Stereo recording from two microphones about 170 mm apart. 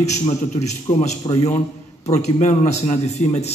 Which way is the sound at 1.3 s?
30° left (ahead or behind).